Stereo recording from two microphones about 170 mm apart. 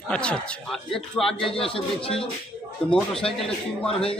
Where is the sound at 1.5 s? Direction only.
30° left (ahead or behind).